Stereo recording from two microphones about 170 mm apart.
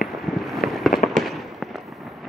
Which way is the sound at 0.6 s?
Centre (ahead or behind).